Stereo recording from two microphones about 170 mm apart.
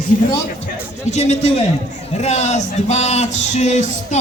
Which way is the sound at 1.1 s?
40° left (ahead or behind).